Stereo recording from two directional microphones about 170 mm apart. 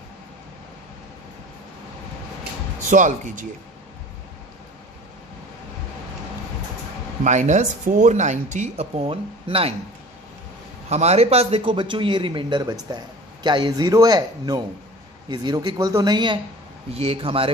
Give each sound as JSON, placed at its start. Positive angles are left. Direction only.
{"t": 2.9, "sound": "speech", "side_deg": -45}
{"t": 7.2, "sound": "speech", "side_deg": -45}
{"t": 10.9, "sound": "speech", "side_deg": -40}